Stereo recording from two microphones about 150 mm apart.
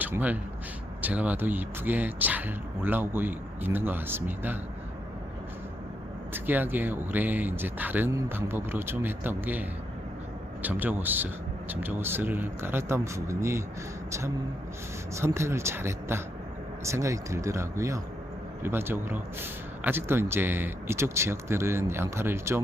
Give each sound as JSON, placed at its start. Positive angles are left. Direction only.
{"t": 0.0, "sound": "a man's voice", "side_deg": -10}
{"t": 6.3, "sound": "a man's voice", "side_deg": -10}
{"t": 15.1, "sound": "a man's voice", "side_deg": -20}